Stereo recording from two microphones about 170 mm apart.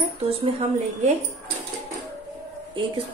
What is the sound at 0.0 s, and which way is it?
Speech, 35° right (ahead or behind).